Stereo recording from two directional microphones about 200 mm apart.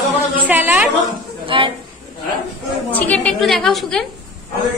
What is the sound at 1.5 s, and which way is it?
Speech, 25° right (ahead or behind).